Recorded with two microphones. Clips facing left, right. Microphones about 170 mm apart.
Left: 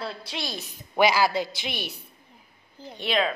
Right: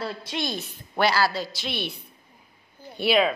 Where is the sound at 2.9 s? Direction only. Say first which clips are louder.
Right 4 dB; 10° right (ahead or behind).